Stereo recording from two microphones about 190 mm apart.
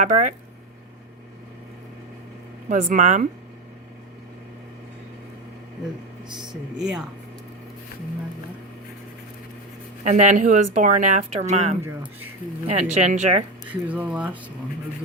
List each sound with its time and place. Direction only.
0.0 s speech: 40° right (ahead or behind)
2.6 s speech: 45° right (ahead or behind)
6.3 s speech: 25° right (ahead or behind)
10.0 s speech: 40° right (ahead or behind)
13.8 s speech: 10° right (ahead or behind)